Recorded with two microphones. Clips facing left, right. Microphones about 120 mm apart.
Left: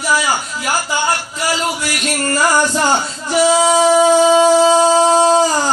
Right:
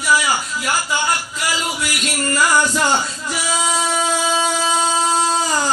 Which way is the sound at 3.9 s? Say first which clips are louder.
Left 10 dB; 30° left (ahead or behind).